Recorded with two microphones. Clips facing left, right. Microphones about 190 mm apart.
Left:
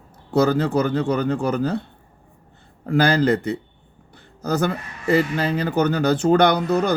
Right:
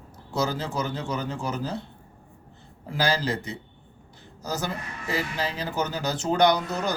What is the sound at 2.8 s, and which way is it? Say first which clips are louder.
Speech: left 9 dB; 60° left (ahead or behind).